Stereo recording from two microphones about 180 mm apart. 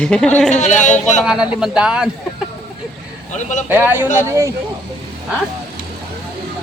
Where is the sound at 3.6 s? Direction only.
10° right (ahead or behind).